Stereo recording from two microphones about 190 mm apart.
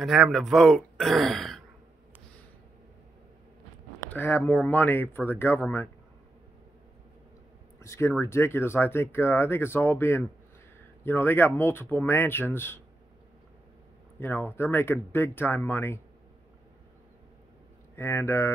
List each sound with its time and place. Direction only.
0.0 s speech: centre (ahead or behind)
4.0 s speech: 10° left (ahead or behind)
7.8 s speech: 15° left (ahead or behind)
14.2 s speech: 10° left (ahead or behind)
17.9 s speech: 15° left (ahead or behind)